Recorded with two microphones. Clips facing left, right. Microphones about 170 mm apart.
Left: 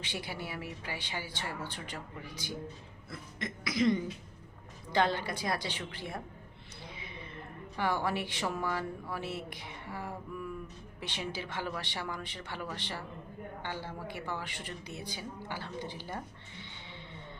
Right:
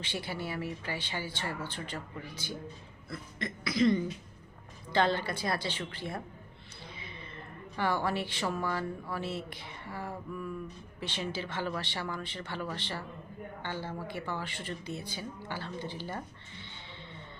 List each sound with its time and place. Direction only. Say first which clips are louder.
0.0 s a woman's voice: right 3 dB; 10° left (ahead or behind)
6.9 s a sound: left 1 dB; 15° left (ahead or behind)
7.8 s a woman's voice: right 1 dB; 15° left (ahead or behind)